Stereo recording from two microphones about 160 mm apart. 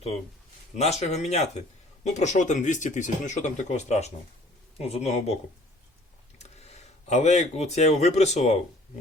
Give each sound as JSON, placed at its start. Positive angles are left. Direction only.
{"t": 0.8, "sound": "a man's voice", "side_deg": 40}
{"t": 6.4, "sound": "speech", "side_deg": 45}